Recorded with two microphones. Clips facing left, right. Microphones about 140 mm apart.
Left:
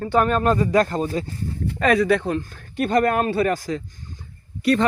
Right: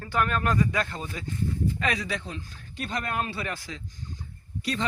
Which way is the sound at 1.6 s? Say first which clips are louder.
Left 15 dB; 50° left (ahead or behind).